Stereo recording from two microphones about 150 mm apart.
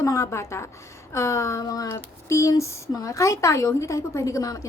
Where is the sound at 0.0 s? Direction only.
20° left (ahead or behind).